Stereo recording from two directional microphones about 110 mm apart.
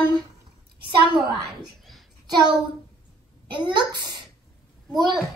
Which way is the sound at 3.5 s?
45° right (ahead or behind).